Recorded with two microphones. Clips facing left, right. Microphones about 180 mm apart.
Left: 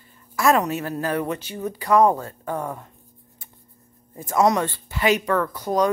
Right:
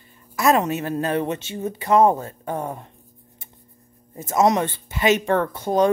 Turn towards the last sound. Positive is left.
turn(degrees=-25)  # may be behind; listen again after turning